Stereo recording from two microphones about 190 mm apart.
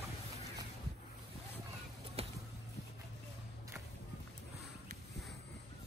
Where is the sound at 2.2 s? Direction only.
30° right (ahead or behind).